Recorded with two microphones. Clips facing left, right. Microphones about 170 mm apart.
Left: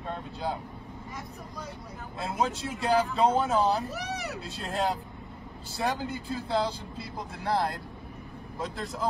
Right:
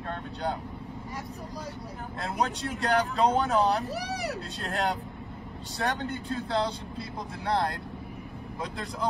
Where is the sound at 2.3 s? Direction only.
5° left (ahead or behind).